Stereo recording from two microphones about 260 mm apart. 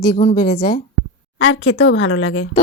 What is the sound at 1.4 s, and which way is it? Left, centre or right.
Speech, left.